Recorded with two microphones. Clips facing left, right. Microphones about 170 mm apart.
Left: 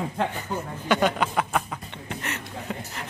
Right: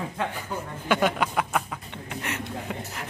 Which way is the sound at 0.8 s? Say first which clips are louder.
Left 1 dB; 10° right (ahead or behind).